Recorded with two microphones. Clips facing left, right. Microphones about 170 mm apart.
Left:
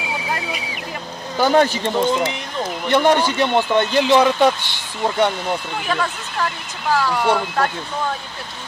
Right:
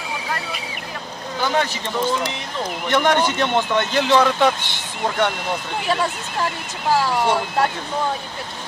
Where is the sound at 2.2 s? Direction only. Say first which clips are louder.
Left 2 dB; 10° left (ahead or behind).